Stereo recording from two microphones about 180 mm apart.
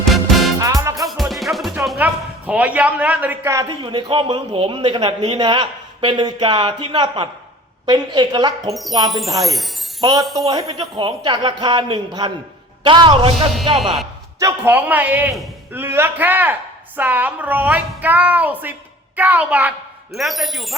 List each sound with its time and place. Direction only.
0.1 s music: centre (ahead or behind)
0.6 s music: 20° right (ahead or behind)
1.0 s music: centre (ahead or behind)
2.5 s a man's voice: 10° right (ahead or behind)
8.7 s speech: centre (ahead or behind)
10.8 s a man's voice: 25° right (ahead or behind)
14.3 s a woman's voice: 15° right (ahead or behind); by 20.7 s centre (ahead or behind)